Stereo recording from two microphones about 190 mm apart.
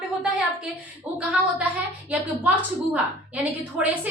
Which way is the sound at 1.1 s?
5° right (ahead or behind).